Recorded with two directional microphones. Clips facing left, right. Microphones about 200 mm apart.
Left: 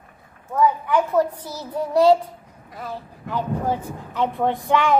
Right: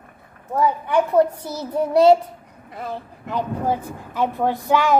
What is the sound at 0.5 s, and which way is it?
Speech, 30° right (ahead or behind).